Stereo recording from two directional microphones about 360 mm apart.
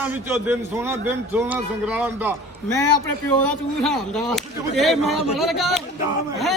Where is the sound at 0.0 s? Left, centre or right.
Centre.